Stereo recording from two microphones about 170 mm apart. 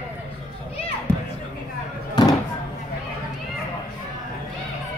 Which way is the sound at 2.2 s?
25° left (ahead or behind).